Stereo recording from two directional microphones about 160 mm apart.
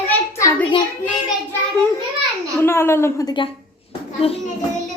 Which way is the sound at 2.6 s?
15° left (ahead or behind).